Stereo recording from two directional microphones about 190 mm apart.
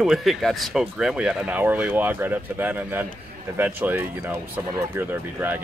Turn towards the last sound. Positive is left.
turn(degrees=-10)  # may be behind; listen again after turning